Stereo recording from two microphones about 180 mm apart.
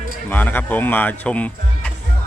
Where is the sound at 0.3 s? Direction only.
10° left (ahead or behind).